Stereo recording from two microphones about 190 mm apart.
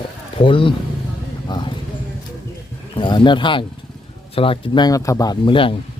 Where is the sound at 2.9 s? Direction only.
25° left (ahead or behind).